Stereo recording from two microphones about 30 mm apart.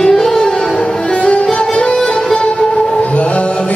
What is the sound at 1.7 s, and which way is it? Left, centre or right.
Music, left.